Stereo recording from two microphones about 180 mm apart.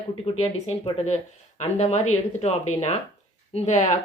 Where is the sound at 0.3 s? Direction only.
35° left (ahead or behind).